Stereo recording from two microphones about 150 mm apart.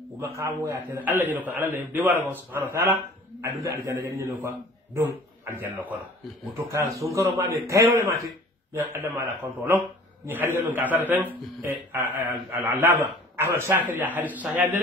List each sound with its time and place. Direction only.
0.2 s a man's voice: 20° right (ahead or behind)
7.0 s a man's voice: 20° right (ahead or behind)